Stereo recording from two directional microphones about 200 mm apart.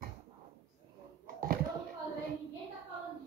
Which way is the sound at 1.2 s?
45° right (ahead or behind).